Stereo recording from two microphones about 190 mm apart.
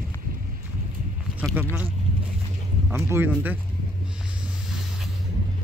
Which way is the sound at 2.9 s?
15° right (ahead or behind).